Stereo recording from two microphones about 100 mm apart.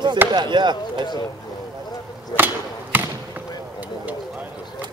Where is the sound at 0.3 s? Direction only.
50° right (ahead or behind).